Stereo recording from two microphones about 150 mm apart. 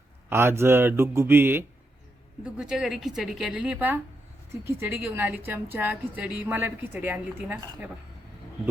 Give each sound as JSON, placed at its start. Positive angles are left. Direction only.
{"t": 0.3, "sound": "a woman's voice", "side_deg": -15}
{"t": 2.4, "sound": "a woman's voice", "side_deg": -5}